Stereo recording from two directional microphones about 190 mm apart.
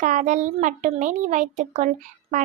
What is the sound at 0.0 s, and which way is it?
A child's voice, 40° right (ahead or behind).